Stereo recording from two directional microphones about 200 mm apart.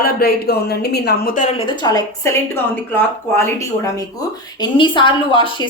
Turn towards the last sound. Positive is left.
turn(degrees=25)  # may be behind; listen again after turning